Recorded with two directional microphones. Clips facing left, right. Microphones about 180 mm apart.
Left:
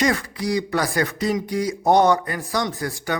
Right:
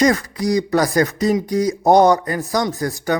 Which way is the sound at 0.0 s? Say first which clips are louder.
Right 5 dB; 40° right (ahead or behind).